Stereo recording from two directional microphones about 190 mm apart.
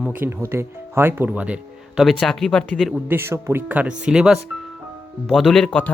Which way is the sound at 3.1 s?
15° right (ahead or behind).